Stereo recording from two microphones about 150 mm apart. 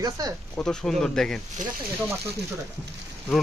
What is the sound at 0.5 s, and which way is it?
Speech, 5° left (ahead or behind).